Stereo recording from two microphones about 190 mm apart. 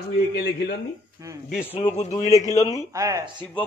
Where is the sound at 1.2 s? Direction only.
15° right (ahead or behind).